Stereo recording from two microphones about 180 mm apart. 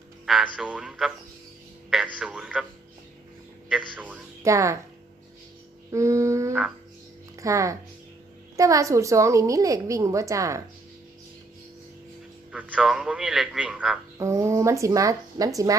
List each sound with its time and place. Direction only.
0.5 s a man's voice: 5° right (ahead or behind)
2.1 s a man's voice: 5° right (ahead or behind)
3.7 s a woman's voice: 10° right (ahead or behind)
5.9 s a sound: 15° right (ahead or behind)
7.3 s a woman's voice: 15° right (ahead or behind)
12.5 s a man's voice: 5° right (ahead or behind)
14.2 s a woman's voice: 15° right (ahead or behind)